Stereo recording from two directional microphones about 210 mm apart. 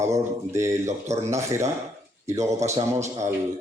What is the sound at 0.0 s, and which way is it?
Speech, 15° right (ahead or behind).